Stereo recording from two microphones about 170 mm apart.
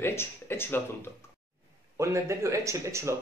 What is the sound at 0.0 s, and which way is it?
Speech, 15° left (ahead or behind).